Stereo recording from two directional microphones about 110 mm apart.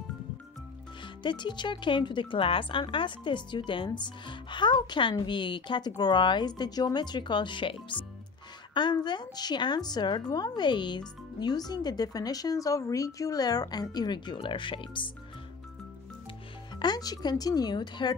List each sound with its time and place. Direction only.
1.0 s a woman's voice: 45° left (ahead or behind)
16.7 s a woman's voice: 40° left (ahead or behind)